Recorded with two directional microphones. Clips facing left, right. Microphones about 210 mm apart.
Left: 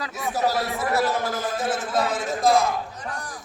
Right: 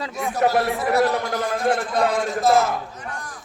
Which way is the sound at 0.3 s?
60° right (ahead or behind).